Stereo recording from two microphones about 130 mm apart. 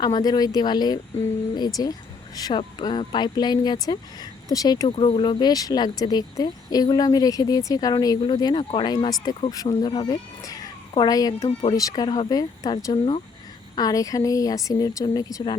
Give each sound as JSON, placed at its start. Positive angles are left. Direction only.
{"t": 0.0, "sound": "speech", "side_deg": 30}
{"t": 4.9, "sound": "speech", "side_deg": 45}